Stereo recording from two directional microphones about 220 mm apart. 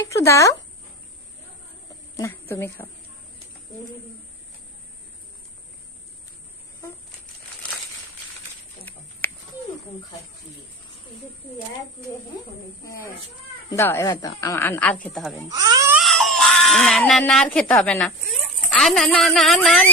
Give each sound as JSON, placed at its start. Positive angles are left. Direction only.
{"t": 0.1, "sound": "speech", "side_deg": 15}
{"t": 2.1, "sound": "a woman's voice", "side_deg": 10}
{"t": 8.8, "sound": "a sound", "side_deg": 10}
{"t": 13.7, "sound": "speech", "side_deg": 10}
{"t": 15.4, "sound": "speech", "side_deg": -15}
{"t": 16.0, "sound": "speech", "side_deg": 0}